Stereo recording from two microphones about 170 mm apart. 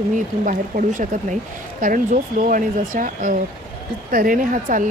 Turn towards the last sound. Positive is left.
turn(degrees=-50)  # may be behind; listen again after turning